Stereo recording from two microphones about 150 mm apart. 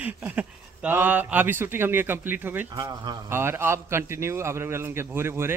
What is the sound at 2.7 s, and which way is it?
Speech, 30° right (ahead or behind).